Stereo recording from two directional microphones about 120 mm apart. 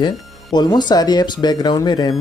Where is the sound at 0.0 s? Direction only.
40° left (ahead or behind).